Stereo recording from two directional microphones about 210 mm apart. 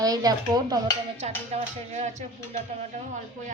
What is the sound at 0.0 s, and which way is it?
Speech, 15° right (ahead or behind).